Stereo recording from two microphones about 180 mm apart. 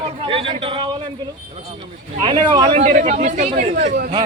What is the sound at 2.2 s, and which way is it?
Speech, 25° right (ahead or behind).